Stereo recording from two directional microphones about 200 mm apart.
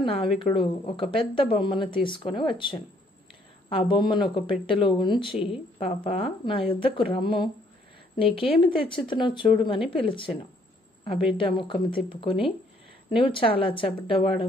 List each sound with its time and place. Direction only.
0.0 s speech: 25° left (ahead or behind)